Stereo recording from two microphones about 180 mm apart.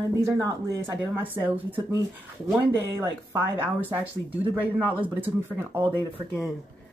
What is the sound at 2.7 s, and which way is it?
Speech, 15° right (ahead or behind).